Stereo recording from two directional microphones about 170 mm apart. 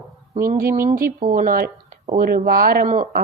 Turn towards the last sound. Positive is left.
turn(degrees=-50)  # may be behind; listen again after turning